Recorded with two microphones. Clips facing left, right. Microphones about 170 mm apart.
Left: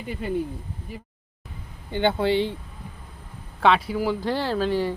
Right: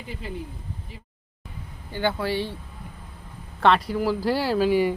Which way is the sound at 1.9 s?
25° left (ahead or behind).